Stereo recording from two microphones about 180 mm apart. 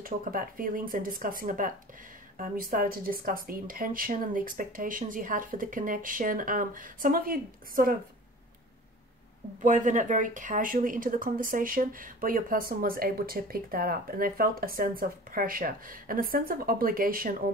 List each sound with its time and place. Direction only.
0.0 s speech: 50° right (ahead or behind)
9.6 s speech: 45° right (ahead or behind)